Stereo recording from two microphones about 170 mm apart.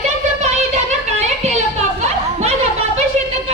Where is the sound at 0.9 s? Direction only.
40° right (ahead or behind).